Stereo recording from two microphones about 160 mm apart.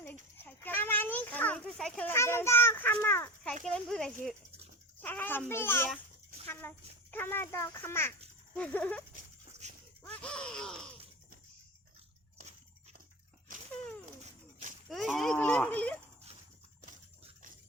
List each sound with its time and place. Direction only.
0.0 s children playing: 10° left (ahead or behind)
3.6 s a child's voice: 5° left (ahead or behind)
9.5 s dog: 45° right (ahead or behind)
10.1 s groan: 5° left (ahead or behind)
14.8 s speech: centre (ahead or behind)